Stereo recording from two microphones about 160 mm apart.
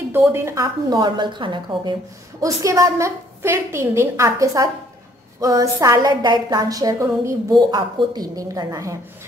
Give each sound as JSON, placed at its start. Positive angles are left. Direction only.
{"t": 0.1, "sound": "a woman's voice", "side_deg": -15}